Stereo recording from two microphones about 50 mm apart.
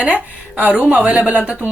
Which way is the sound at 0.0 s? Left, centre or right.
Right.